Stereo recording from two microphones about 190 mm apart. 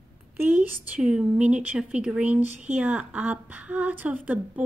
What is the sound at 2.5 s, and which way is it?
Speech, 35° right (ahead or behind).